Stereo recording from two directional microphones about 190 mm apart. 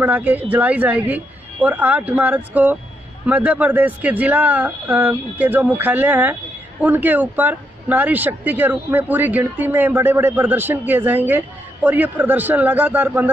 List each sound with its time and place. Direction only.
0.0 s speech: 10° right (ahead or behind)